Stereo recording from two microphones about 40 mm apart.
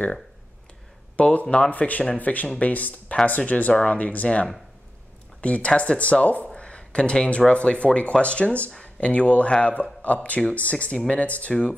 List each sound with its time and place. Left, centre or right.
1.1 s speech: left
6.5 s a sound: left
6.8 s speech: left
11.2 s speech: left